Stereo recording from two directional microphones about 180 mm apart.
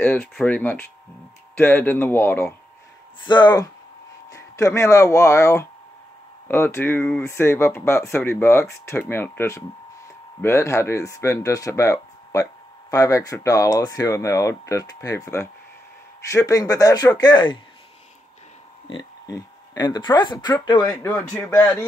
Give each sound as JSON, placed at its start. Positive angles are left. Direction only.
{"t": 0.0, "sound": "speech", "side_deg": 10}
{"t": 3.3, "sound": "speech", "side_deg": 25}
{"t": 18.9, "sound": "speech", "side_deg": 20}
{"t": 21.0, "sound": "speech", "side_deg": 10}